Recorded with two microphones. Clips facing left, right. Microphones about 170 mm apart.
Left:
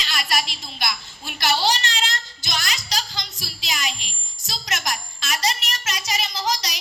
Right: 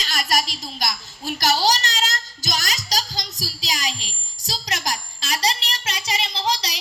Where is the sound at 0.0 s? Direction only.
40° right (ahead or behind).